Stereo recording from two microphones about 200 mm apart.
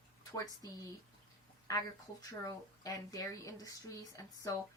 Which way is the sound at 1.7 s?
15° left (ahead or behind).